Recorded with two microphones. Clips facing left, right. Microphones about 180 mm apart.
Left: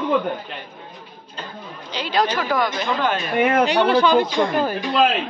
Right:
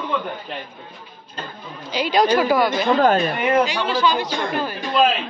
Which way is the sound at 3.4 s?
60° left (ahead or behind).